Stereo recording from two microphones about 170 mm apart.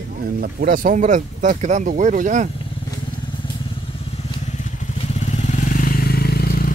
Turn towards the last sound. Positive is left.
turn(degrees=65)  # may be behind; listen again after turning